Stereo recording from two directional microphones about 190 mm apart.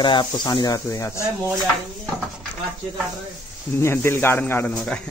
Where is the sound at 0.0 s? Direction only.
25° left (ahead or behind).